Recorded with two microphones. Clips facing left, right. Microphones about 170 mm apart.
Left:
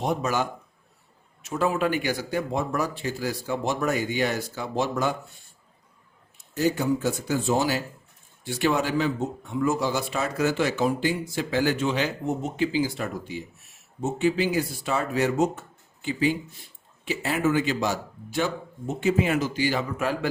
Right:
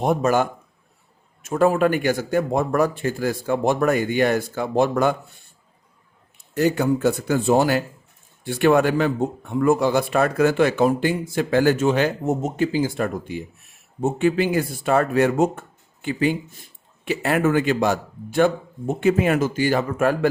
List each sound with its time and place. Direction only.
0.0 s speech: 50° right (ahead or behind)
6.5 s speech: 65° right (ahead or behind)